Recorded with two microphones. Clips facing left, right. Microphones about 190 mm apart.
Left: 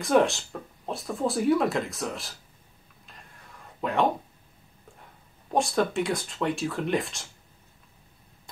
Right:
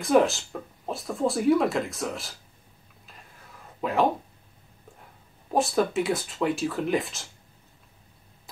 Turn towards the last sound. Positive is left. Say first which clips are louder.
# right 1 dB
turn(degrees=0)  # may be behind; listen again after turning